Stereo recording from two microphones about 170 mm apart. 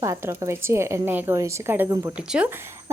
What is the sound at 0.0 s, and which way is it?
Speech, 15° right (ahead or behind).